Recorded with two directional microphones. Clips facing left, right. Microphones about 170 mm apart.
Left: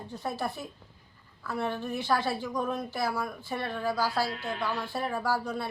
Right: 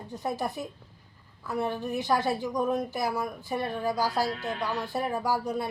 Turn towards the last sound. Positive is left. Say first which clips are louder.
# right 2 dB
turn(degrees=-15)  # may be behind; listen again after turning